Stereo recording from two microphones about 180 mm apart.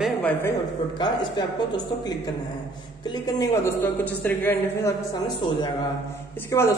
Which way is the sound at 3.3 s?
15° left (ahead or behind).